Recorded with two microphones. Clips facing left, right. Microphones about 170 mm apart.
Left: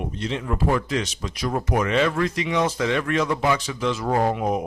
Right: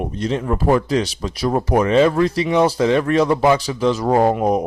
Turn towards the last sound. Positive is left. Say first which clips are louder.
# right 6 dB
turn(degrees=-40)  # may be behind; listen again after turning